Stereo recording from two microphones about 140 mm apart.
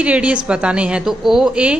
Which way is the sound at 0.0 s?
10° right (ahead or behind).